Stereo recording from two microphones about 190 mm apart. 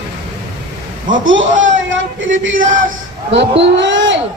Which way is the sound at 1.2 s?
85° right.